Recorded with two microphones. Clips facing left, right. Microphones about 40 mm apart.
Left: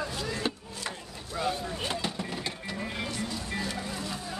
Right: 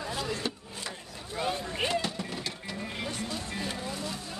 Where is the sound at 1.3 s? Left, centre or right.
Right.